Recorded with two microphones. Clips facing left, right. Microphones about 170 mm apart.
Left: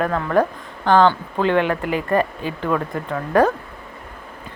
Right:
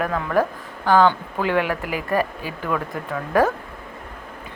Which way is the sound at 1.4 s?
10° right (ahead or behind).